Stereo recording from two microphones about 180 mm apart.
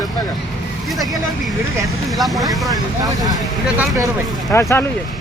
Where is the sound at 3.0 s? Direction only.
20° right (ahead or behind).